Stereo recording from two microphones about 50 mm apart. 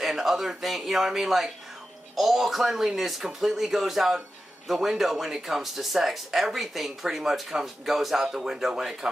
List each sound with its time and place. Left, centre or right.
0.0 s speech: centre